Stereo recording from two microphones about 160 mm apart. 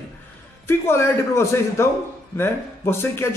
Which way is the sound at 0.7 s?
15° left (ahead or behind).